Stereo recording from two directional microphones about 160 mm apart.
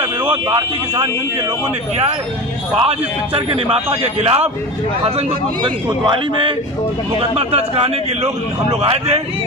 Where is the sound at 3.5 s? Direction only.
35° right (ahead or behind).